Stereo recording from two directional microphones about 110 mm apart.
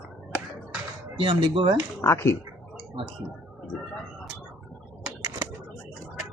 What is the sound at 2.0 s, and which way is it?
Speech, 25° left (ahead or behind).